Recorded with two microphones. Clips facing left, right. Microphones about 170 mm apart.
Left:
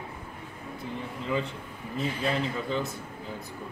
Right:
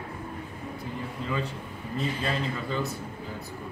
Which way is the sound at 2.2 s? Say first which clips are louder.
Left 1 dB; 20° left (ahead or behind).